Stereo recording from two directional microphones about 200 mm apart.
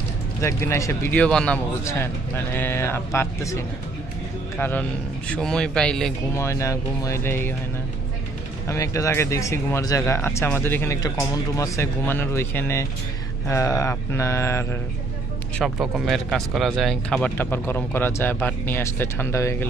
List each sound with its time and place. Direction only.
0.4 s a man's voice: 10° left (ahead or behind)
6.3 s speech: 15° left (ahead or behind)
8.6 s speech: 15° left (ahead or behind)
15.6 s a man's voice: centre (ahead or behind)